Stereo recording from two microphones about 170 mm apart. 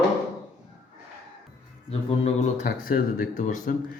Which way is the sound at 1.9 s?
40° left (ahead or behind).